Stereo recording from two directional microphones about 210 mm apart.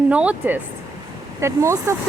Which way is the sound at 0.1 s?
5° right (ahead or behind).